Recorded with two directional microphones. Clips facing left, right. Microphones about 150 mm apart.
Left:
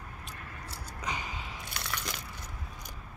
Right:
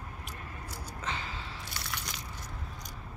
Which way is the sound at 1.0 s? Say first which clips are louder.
Left 1 dB; 15° left (ahead or behind).